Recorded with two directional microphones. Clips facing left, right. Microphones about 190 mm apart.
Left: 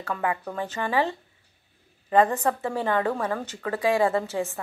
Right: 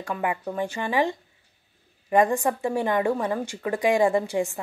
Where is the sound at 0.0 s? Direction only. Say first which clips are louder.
Right 1 dB; 15° right (ahead or behind).